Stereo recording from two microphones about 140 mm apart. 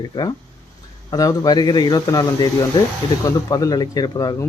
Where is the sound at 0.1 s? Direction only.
30° left (ahead or behind).